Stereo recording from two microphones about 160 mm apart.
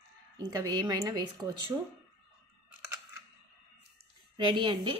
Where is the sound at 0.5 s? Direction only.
25° right (ahead or behind).